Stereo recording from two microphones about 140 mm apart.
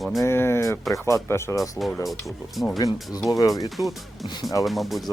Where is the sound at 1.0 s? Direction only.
20° left (ahead or behind).